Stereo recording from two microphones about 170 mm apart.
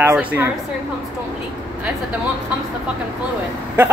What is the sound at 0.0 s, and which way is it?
Speech, 10° right (ahead or behind).